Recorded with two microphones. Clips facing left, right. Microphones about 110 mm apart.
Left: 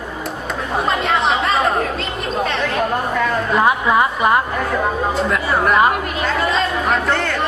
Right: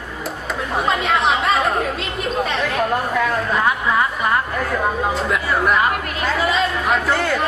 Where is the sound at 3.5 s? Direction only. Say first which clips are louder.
Left 5 dB; 20° left (ahead or behind).